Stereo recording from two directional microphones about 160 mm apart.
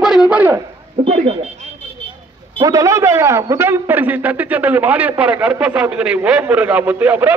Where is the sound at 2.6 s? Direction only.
20° right (ahead or behind).